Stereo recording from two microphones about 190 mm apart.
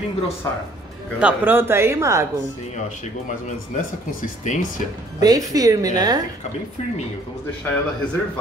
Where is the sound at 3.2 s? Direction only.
40° left (ahead or behind).